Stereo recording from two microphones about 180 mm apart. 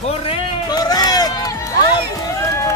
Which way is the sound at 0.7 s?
20° left (ahead or behind).